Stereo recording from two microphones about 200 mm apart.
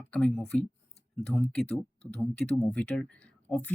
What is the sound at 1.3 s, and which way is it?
Speech, 5° left (ahead or behind).